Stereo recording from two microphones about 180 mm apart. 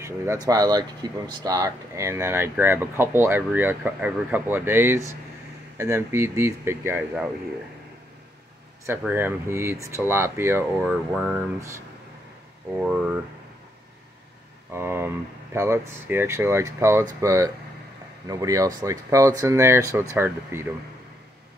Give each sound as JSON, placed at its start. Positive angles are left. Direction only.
{"t": 0.0, "sound": "speech", "side_deg": -20}
{"t": 8.8, "sound": "speech", "side_deg": -10}
{"t": 12.7, "sound": "speech", "side_deg": -5}
{"t": 14.7, "sound": "speech", "side_deg": -15}